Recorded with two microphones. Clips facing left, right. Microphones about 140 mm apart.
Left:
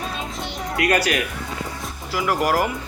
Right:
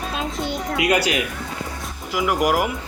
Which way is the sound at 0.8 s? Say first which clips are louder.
Even; 20° right (ahead or behind).